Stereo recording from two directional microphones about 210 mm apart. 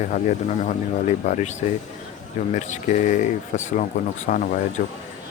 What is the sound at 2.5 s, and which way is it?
Speech, 35° left (ahead or behind).